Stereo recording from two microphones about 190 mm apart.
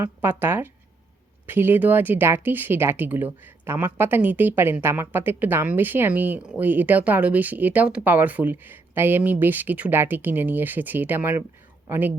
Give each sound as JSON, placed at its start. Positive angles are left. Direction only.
{"t": 0.0, "sound": "speech", "side_deg": -10}